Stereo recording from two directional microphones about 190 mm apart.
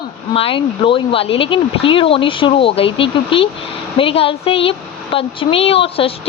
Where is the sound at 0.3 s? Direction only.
30° left (ahead or behind).